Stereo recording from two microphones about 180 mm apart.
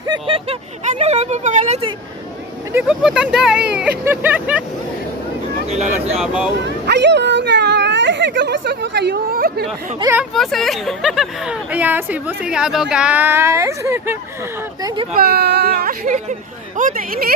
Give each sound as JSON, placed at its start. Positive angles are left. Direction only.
{"t": 0.1, "sound": "a sound", "side_deg": -30}
{"t": 2.8, "sound": "speech", "side_deg": -5}
{"t": 5.7, "sound": "speech", "side_deg": -40}
{"t": 6.1, "sound": "speech", "side_deg": -5}
{"t": 6.8, "sound": "a sound", "side_deg": -70}
{"t": 10.2, "sound": "speech", "side_deg": 0}
{"t": 15.1, "sound": "speech", "side_deg": -60}